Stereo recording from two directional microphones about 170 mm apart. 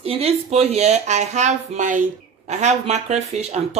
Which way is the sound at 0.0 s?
35° right (ahead or behind).